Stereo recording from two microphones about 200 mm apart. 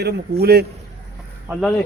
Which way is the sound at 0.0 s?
55° right (ahead or behind).